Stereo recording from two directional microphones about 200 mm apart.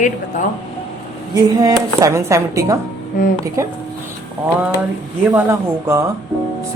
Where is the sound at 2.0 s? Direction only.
15° right (ahead or behind).